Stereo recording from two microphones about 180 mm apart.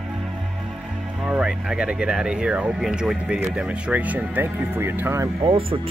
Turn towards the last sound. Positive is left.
turn(degrees=-30)  # may be behind; listen again after turning